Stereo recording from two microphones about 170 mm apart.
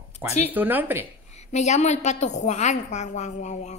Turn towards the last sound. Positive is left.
turn(degrees=45)  # may be behind; listen again after turning